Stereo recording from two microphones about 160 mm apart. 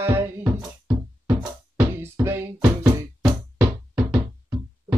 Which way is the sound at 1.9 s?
15° right (ahead or behind).